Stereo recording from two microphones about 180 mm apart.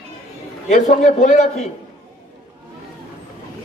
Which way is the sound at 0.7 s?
45° left (ahead or behind).